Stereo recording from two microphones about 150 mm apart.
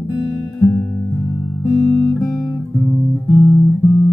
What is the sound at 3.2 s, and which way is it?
Music, 30° left (ahead or behind).